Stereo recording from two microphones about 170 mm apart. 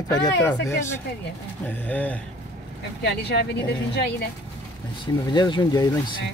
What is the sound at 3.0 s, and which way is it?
Speech, 80° left.